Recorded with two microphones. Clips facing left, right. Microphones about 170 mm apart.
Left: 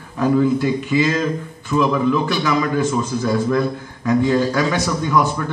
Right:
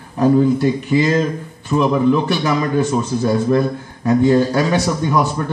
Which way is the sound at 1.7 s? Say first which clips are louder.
Right 1 dB; 35° right (ahead or behind).